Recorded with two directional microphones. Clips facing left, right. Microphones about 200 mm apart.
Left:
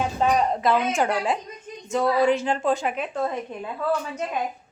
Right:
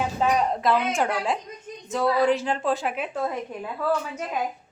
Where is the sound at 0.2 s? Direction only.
Centre (ahead or behind).